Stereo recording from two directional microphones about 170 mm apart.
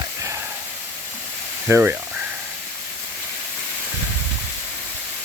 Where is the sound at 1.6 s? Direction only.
10° right (ahead or behind).